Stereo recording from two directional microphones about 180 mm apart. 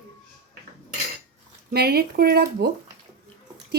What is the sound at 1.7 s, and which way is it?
Speech, 60° right (ahead or behind).